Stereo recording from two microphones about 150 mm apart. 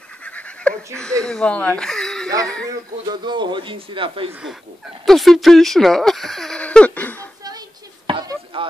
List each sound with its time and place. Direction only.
0.2 s goose: 10° left (ahead or behind)
1.2 s speech: 5° left (ahead or behind)
2.6 s speech: 25° right (ahead or behind)
4.3 s speech: 5° right (ahead or behind)
7.2 s a sound: 25° right (ahead or behind)
8.1 s chop: 35° right (ahead or behind)